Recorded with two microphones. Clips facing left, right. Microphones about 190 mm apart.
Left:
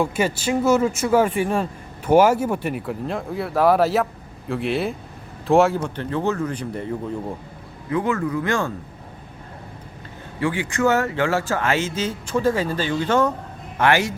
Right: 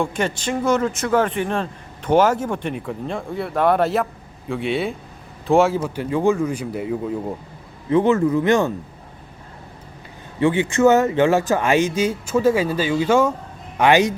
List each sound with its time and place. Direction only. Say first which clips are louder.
0.0 s speech: left 1 dB; 5° left (ahead or behind)
5.8 s speech: right 4 dB; 10° right (ahead or behind)
7.9 s speech: right 6 dB; 25° right (ahead or behind)
10.4 s speech: right 5 dB; 25° right (ahead or behind)